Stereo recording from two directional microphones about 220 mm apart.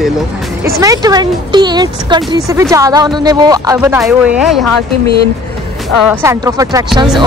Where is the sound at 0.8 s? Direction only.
15° right (ahead or behind).